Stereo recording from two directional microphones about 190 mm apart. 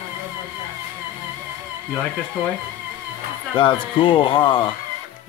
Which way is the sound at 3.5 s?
25° left (ahead or behind).